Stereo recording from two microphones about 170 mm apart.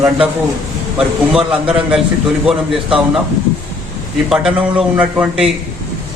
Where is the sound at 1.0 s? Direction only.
5° right (ahead or behind).